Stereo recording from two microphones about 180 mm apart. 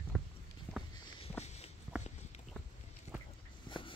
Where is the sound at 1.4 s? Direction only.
35° left (ahead or behind).